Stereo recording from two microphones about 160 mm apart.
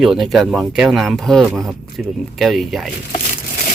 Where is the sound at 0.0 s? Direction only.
Centre (ahead or behind).